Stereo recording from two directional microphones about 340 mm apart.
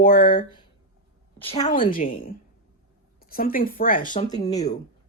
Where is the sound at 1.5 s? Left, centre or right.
Centre.